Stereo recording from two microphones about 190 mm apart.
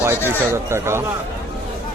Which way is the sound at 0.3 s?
15° right (ahead or behind).